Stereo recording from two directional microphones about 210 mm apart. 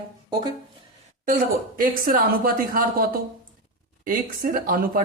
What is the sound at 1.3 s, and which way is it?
Speech, 40° right (ahead or behind).